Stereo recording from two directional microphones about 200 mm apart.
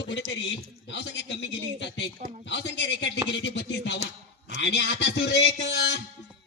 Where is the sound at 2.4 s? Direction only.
60° left (ahead or behind).